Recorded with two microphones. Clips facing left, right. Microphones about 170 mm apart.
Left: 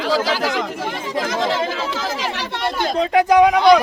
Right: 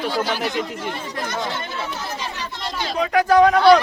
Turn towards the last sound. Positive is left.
turn(degrees=10)  # may be behind; listen again after turning